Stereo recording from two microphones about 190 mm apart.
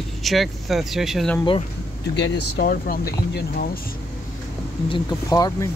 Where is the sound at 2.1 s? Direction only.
65° left (ahead or behind).